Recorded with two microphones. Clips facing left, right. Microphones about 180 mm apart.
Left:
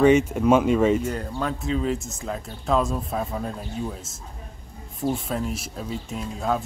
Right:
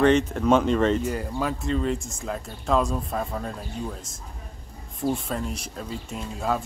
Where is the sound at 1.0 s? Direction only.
5° right (ahead or behind).